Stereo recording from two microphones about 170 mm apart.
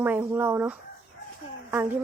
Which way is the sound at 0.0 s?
10° right (ahead or behind).